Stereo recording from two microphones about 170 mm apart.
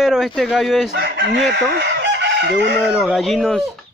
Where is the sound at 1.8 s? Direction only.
90° right.